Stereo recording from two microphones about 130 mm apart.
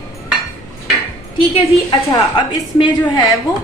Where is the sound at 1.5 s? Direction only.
35° left (ahead or behind).